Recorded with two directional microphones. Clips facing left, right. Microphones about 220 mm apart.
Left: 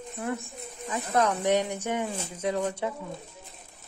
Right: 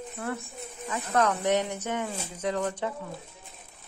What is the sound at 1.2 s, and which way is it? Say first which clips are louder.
Speech: left 1 dB; 15° left (ahead or behind).